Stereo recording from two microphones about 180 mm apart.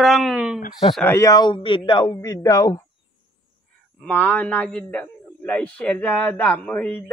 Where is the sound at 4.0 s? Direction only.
10° left (ahead or behind).